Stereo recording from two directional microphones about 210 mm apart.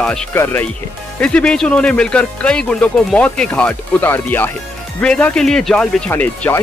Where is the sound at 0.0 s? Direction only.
5° left (ahead or behind).